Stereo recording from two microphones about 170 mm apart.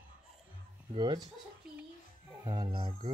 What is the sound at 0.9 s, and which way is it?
Speech, 25° right (ahead or behind).